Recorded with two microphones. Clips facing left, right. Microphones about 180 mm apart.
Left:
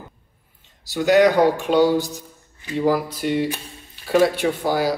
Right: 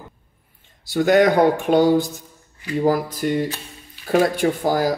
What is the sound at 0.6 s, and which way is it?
A man's voice, 55° right (ahead or behind).